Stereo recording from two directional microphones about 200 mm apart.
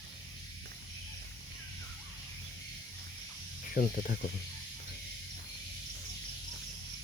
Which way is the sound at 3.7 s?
45° left (ahead or behind).